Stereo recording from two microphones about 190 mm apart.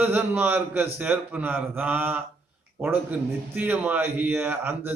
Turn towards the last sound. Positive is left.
turn(degrees=-10)  # may be behind; listen again after turning